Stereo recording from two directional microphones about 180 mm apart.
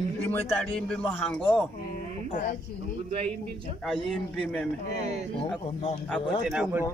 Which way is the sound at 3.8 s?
Centre (ahead or behind).